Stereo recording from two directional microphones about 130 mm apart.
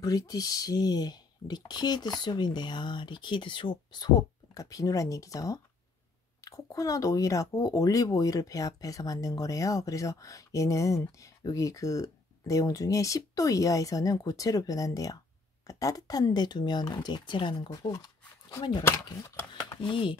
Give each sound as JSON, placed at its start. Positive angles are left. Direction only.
{"t": 0.0, "sound": "speech", "side_deg": 30}
{"t": 19.8, "sound": "speech", "side_deg": 40}